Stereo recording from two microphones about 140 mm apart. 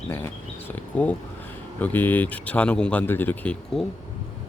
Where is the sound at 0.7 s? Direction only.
10° left (ahead or behind).